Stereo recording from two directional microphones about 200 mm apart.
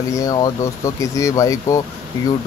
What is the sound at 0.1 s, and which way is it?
Speech, 15° left (ahead or behind).